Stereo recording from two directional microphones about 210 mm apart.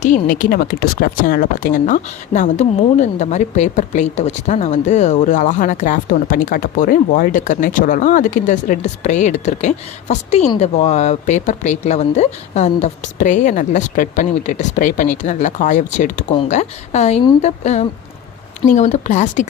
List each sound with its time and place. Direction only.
0.0 s speech: 40° left (ahead or behind)